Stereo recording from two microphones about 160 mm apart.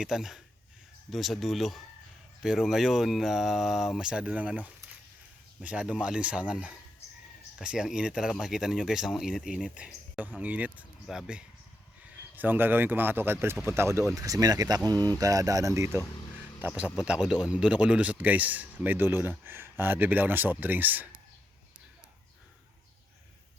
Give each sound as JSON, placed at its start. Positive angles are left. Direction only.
{"t": 0.0, "sound": "speech", "side_deg": 0}